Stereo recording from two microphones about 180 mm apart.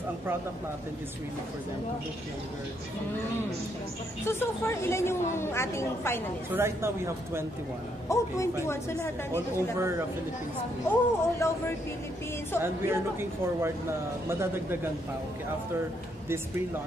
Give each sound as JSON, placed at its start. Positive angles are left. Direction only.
{"t": 4.3, "sound": "a woman's voice", "side_deg": 15}
{"t": 6.5, "sound": "speech", "side_deg": -15}
{"t": 8.1, "sound": "a woman's voice", "side_deg": 15}
{"t": 9.8, "sound": "speech", "side_deg": -15}
{"t": 10.9, "sound": "a woman's voice", "side_deg": 15}
{"t": 12.6, "sound": "speech", "side_deg": -15}